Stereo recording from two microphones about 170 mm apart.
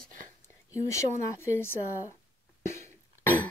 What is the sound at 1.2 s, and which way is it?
Speech, 15° left (ahead or behind).